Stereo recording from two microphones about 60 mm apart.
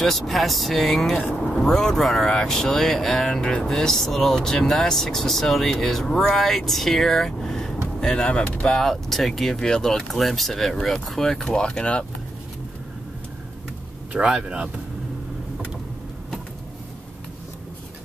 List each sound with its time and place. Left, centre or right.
0.0 s speech: centre
14.1 s speech: centre